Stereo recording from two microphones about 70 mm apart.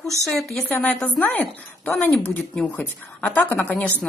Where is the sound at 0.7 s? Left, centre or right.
Left.